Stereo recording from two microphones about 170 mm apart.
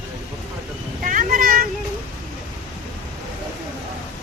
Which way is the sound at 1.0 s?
55° right (ahead or behind).